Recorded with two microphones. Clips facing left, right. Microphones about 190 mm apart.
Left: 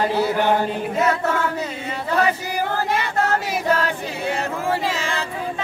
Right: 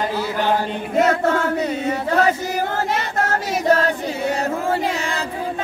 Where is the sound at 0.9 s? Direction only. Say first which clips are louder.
Right 5 dB; 50° right (ahead or behind).